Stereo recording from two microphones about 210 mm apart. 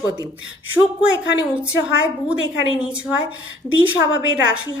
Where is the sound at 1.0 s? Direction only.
5° right (ahead or behind).